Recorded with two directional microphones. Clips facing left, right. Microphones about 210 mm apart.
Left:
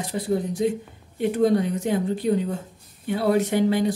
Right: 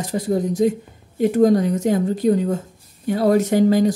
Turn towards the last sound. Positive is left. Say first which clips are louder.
# right 5 dB
turn(degrees=-40)  # may be behind; listen again after turning